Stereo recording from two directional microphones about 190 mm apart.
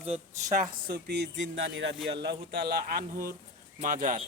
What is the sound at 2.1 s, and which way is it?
Speech, 60° right (ahead or behind).